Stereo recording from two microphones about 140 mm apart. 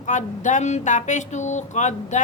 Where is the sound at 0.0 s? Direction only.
60° left (ahead or behind).